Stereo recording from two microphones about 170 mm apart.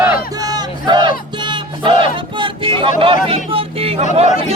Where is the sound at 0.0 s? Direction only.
20° right (ahead or behind).